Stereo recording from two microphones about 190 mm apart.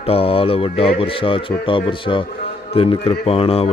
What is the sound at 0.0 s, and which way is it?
Speech, 30° left (ahead or behind).